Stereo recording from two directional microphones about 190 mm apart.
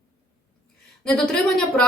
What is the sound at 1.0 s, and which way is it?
Speech, centre (ahead or behind).